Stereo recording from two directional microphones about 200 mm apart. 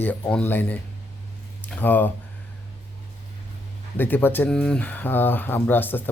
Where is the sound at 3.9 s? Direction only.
10° left (ahead or behind).